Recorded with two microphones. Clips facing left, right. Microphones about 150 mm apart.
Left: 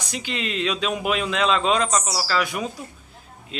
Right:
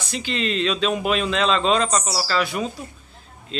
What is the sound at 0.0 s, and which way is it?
Speech, 15° left (ahead or behind).